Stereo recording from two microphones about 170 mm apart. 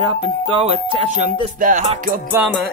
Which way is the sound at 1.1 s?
50° right (ahead or behind).